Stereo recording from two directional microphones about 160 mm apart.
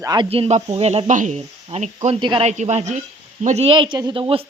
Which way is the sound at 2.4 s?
45° right (ahead or behind).